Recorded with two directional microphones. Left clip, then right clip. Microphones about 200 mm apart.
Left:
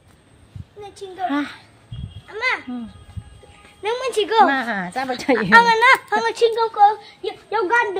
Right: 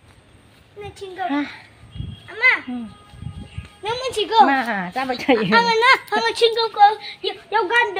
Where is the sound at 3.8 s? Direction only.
45° left (ahead or behind).